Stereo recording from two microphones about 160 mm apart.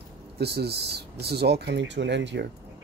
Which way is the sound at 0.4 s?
90° right.